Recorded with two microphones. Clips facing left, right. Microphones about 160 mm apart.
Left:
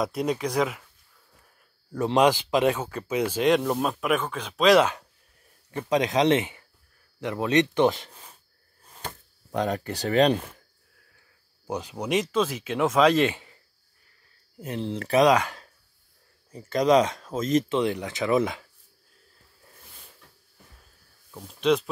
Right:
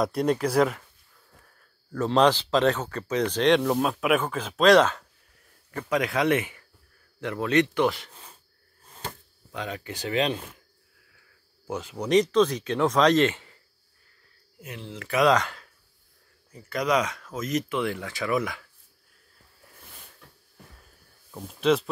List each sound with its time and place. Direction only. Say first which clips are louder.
0.0 s speech: right 2 dB; centre (ahead or behind)
1.9 s speech: even; 15° left (ahead or behind)
5.7 s speech: left 2 dB; 25° left (ahead or behind)
9.5 s speech: left 7 dB; 45° left (ahead or behind)
11.6 s speech: left 1 dB; 15° left (ahead or behind)
12.1 s speech: right 5 dB; 5° left (ahead or behind)
14.6 s speech: left 9 dB; 35° left (ahead or behind)
15.2 s speech: right 1 dB; 10° left (ahead or behind)
16.5 s speech: left 5 dB; 25° left (ahead or behind)
21.4 s speech: even; 5° right (ahead or behind)